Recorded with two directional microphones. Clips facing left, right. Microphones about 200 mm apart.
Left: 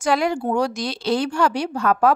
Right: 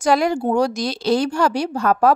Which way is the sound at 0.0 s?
40° right (ahead or behind).